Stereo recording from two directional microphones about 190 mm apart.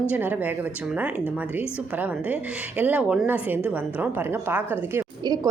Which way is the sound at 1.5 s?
10° right (ahead or behind).